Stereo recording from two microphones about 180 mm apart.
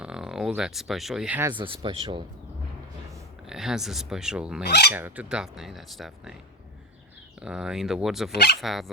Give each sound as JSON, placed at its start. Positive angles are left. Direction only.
{"t": 0.0, "sound": "speech", "side_deg": -5}
{"t": 1.5, "sound": "speech", "side_deg": -30}
{"t": 3.4, "sound": "speech", "side_deg": 0}
{"t": 4.6, "sound": "speech", "side_deg": 65}
{"t": 4.9, "sound": "speech", "side_deg": -10}
{"t": 7.4, "sound": "speech", "side_deg": -5}
{"t": 8.3, "sound": "speech", "side_deg": 65}
{"t": 8.6, "sound": "speech", "side_deg": 0}